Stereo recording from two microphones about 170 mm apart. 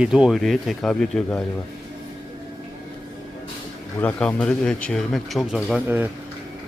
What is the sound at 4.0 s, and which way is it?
Speech, 10° left (ahead or behind).